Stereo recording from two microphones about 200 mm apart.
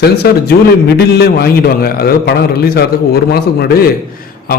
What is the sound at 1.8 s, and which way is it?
A man's voice, 50° left (ahead or behind).